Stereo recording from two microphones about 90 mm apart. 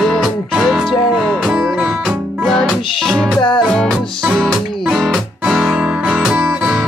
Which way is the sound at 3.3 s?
65° left (ahead or behind).